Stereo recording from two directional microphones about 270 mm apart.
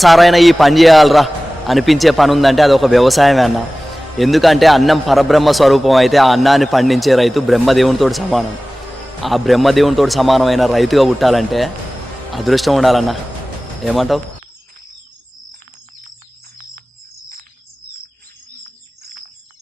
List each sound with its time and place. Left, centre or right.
0.0 s a man's voice: centre